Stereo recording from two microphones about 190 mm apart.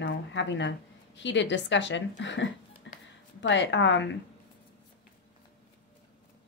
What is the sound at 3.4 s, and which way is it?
Speech, 75° left (ahead or behind).